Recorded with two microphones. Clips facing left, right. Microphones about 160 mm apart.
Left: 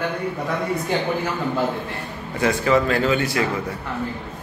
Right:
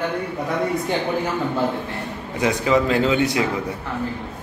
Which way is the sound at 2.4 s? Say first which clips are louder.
Even; 15° right (ahead or behind).